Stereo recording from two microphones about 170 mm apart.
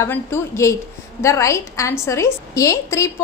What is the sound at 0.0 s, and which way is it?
A woman's voice, 15° left (ahead or behind).